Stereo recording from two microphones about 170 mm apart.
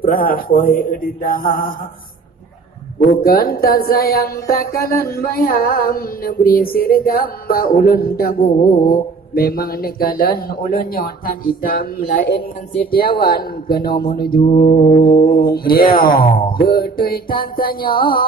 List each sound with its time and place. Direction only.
0.0 s speech: 60° left (ahead or behind)
3.2 s speech: 60° left (ahead or behind)